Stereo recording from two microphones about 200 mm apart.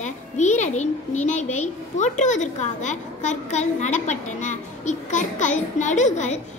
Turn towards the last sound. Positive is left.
turn(degrees=35)  # may be behind; listen again after turning